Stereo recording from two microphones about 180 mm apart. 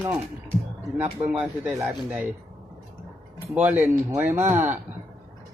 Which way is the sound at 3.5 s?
10° right (ahead or behind).